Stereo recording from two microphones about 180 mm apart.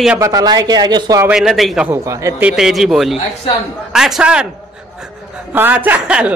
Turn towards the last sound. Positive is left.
turn(degrees=-10)  # may be behind; listen again after turning